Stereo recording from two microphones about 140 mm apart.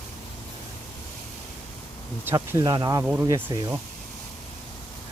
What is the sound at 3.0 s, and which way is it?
Speech, 15° right (ahead or behind).